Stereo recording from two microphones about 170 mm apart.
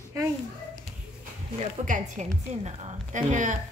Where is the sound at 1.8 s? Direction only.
45° right (ahead or behind).